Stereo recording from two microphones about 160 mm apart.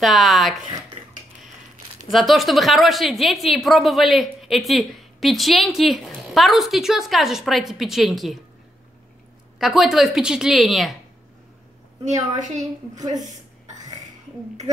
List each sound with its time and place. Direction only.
0.0 s a woman's voice: centre (ahead or behind)
2.0 s a woman's voice: centre (ahead or behind)
9.6 s a woman's voice: centre (ahead or behind)
12.5 s a woman's voice: 25° right (ahead or behind)